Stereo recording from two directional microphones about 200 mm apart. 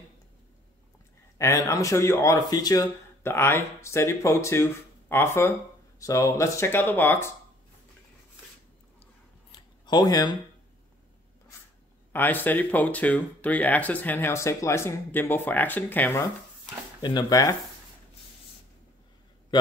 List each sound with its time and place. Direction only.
1.4 s speech: 15° left (ahead or behind)
9.8 s speech: 20° left (ahead or behind)
12.1 s speech: 10° left (ahead or behind)
17.0 s speech: 20° left (ahead or behind)